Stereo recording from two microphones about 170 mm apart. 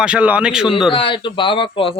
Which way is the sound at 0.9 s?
30° left (ahead or behind).